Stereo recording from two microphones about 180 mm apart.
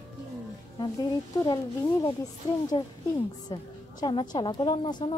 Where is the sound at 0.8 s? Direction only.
25° left (ahead or behind).